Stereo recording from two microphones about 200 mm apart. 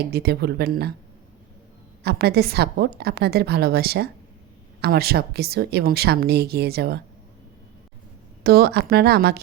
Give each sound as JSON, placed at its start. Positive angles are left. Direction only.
{"t": 0.0, "sound": "speech", "side_deg": -55}
{"t": 2.0, "sound": "speech", "side_deg": -50}
{"t": 8.4, "sound": "speech", "side_deg": -50}